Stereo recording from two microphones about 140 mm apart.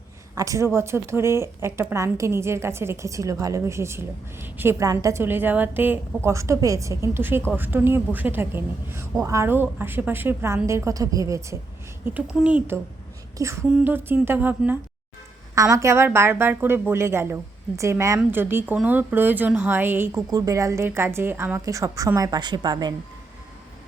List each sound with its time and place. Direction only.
0.3 s speech: 25° right (ahead or behind)
12.3 s speech: 5° right (ahead or behind)
15.5 s speech: 25° right (ahead or behind)